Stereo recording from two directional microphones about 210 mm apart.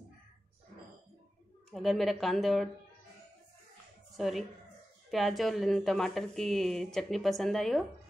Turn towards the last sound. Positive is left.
turn(degrees=0)  # may be behind; listen again after turning